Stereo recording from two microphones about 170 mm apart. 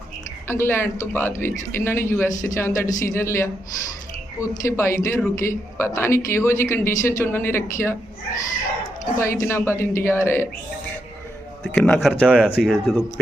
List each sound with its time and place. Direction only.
0.4 s a woman's voice: 15° left (ahead or behind)
9.1 s a woman's voice: 15° left (ahead or behind)
11.7 s speech: 5° left (ahead or behind)
12.0 s speech: 5° right (ahead or behind)